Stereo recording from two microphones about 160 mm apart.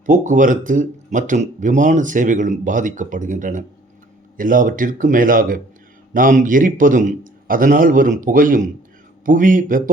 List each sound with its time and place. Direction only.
0.0 s a man's voice: 55° right (ahead or behind)